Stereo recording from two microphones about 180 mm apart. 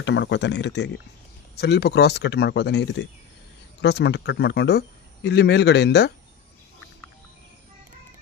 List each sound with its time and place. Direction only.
0.0 s speech: 85° left
3.8 s speech: 70° left (ahead or behind)